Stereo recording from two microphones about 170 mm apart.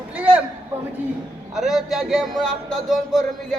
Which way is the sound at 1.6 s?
Centre (ahead or behind).